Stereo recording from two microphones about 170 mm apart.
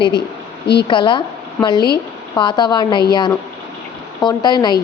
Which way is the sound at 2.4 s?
25° left (ahead or behind).